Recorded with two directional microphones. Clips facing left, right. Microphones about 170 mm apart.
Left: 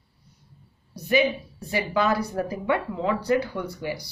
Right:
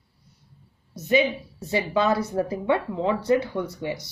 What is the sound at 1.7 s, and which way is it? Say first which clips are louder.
Speech: right 1 dB; 25° right (ahead or behind).